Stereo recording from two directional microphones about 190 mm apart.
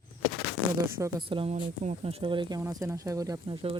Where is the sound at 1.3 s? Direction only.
25° right (ahead or behind).